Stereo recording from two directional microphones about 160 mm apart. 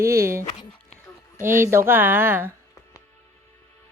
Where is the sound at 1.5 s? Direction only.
15° right (ahead or behind).